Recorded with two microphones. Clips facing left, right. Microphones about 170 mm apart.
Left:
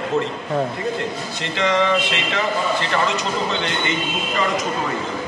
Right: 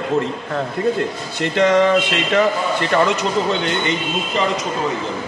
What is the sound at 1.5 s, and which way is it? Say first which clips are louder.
Speech: right 5 dB; 50° right (ahead or behind).